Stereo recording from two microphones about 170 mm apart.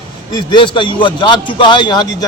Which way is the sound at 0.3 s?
25° left (ahead or behind).